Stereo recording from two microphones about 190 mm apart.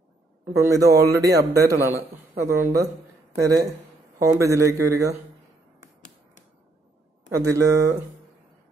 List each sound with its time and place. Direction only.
0.6 s a man's voice: 15° right (ahead or behind)
7.2 s a man's voice: 15° right (ahead or behind)